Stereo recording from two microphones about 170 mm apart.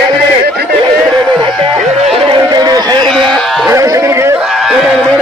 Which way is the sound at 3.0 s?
5° left (ahead or behind).